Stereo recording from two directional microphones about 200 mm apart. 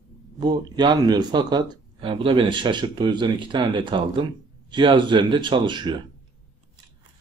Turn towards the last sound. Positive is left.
turn(degrees=-25)  # may be behind; listen again after turning